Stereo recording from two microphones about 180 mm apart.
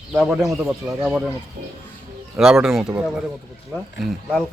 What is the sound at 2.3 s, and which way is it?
A man's voice, 5° right (ahead or behind).